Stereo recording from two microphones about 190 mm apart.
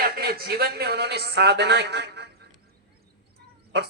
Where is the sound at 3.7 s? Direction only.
60° right (ahead or behind).